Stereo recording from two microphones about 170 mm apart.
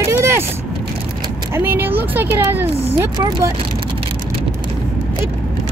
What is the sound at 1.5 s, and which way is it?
Speech, 10° right (ahead or behind).